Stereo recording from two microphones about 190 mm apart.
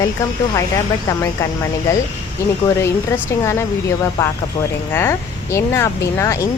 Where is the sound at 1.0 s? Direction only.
15° left (ahead or behind).